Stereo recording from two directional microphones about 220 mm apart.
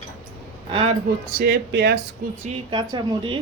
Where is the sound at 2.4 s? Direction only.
20° right (ahead or behind).